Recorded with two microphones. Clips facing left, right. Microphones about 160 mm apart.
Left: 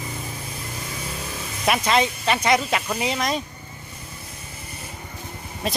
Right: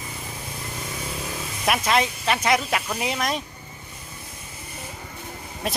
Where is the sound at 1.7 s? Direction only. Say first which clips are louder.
Left 2 dB; centre (ahead or behind).